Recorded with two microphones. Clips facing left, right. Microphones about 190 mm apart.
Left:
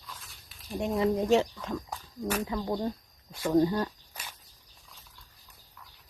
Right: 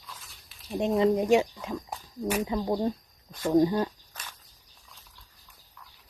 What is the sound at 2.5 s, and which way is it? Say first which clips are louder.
A woman's voice: right 4 dB; 25° right (ahead or behind).